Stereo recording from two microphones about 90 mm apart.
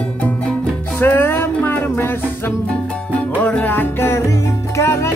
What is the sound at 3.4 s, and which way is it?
Music, 15° left (ahead or behind).